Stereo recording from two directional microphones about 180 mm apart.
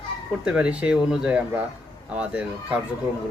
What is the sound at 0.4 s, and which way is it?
A man's voice, 5° right (ahead or behind).